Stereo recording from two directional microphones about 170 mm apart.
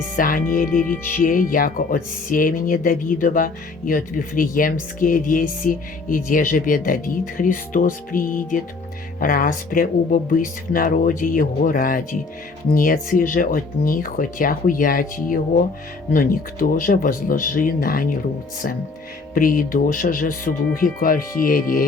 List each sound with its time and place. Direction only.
0.2 s speech: 55° left (ahead or behind)
19.3 s speech: 55° left (ahead or behind)